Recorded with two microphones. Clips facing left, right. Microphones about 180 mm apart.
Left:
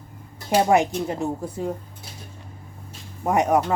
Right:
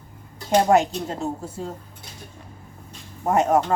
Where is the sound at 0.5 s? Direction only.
15° left (ahead or behind).